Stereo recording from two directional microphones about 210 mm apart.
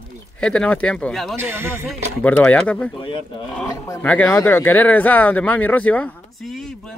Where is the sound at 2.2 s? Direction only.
5° left (ahead or behind).